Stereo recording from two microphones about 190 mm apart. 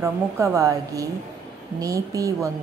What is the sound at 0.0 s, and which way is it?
A woman's voice, 15° right (ahead or behind).